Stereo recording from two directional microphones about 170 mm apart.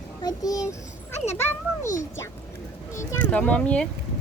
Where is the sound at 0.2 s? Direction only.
20° left (ahead or behind).